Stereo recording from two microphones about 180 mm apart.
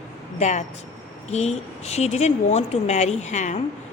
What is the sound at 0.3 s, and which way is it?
A woman's voice, 40° left (ahead or behind).